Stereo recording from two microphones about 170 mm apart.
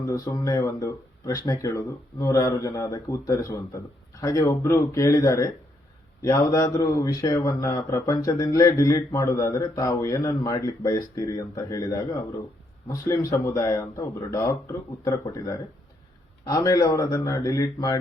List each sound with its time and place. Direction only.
0.0 s speech: 20° left (ahead or behind)